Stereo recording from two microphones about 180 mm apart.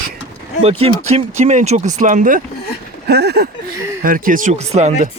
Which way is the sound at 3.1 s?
65° right (ahead or behind).